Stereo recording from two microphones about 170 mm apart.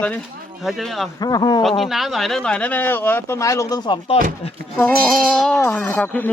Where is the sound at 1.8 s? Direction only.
Centre (ahead or behind); by 4.2 s 25° left (ahead or behind).